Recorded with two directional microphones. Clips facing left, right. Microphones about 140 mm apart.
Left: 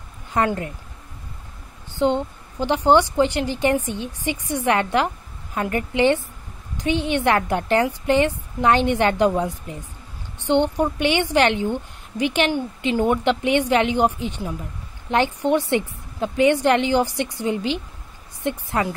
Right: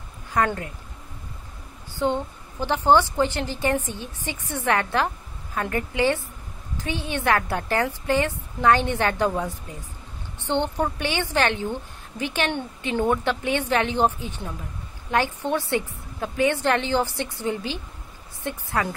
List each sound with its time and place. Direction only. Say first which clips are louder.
0.3 s a woman's voice: left 2 dB; 25° left (ahead or behind)
2.0 s a woman's voice: left 4 dB; 20° left (ahead or behind)
10.4 s a woman's voice: left 5 dB; 15° left (ahead or behind)